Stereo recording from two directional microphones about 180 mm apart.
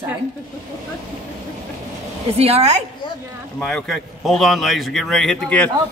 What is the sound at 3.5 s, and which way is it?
A man's voice, 5° left (ahead or behind).